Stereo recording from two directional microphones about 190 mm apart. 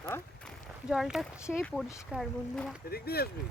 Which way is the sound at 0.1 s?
10° left (ahead or behind).